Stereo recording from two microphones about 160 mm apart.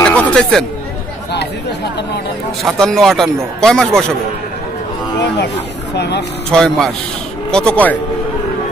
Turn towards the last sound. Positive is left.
turn(degrees=5)  # may be behind; listen again after turning